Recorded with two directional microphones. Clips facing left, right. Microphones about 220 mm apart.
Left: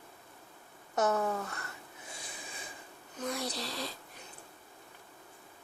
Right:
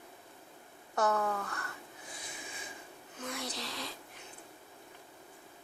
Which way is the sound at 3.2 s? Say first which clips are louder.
Left 4 dB; 35° left (ahead or behind).